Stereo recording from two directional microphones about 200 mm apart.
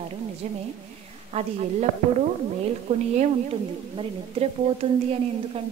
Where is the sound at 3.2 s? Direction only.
30° right (ahead or behind).